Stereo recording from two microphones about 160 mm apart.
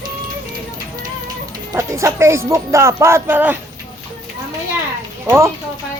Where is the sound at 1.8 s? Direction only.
20° right (ahead or behind).